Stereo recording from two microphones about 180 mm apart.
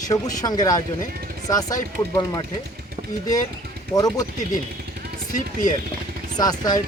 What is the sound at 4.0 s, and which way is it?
Speech, 20° left (ahead or behind).